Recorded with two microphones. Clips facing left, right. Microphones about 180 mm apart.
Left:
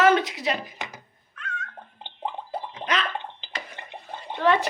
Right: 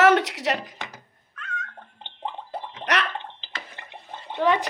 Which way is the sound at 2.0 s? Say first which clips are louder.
Left 1 dB; 10° left (ahead or behind).